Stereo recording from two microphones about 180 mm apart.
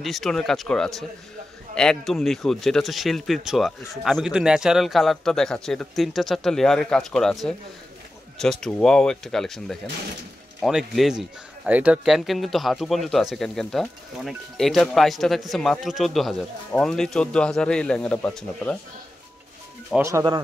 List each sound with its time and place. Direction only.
0.0 s a man's voice: centre (ahead or behind)
20.0 s speech: 15° right (ahead or behind)